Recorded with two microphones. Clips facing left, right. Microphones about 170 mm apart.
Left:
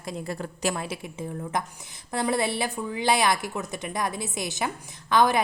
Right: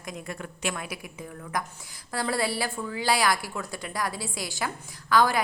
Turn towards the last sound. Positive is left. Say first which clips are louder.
# left 1 dB
turn(degrees=20)  # may be behind; listen again after turning